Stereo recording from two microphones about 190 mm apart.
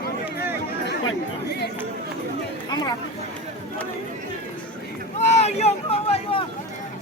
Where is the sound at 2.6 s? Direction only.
20° left (ahead or behind).